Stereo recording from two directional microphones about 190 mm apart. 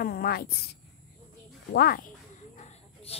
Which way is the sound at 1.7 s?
55° left (ahead or behind).